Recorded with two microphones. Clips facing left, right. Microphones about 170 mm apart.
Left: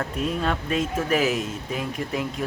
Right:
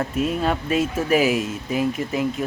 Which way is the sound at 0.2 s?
5° right (ahead or behind).